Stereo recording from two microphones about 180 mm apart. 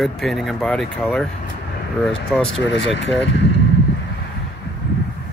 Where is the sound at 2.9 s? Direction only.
75° left (ahead or behind).